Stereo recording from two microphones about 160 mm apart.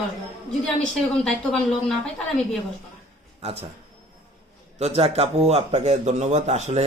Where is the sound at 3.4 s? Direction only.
40° right (ahead or behind).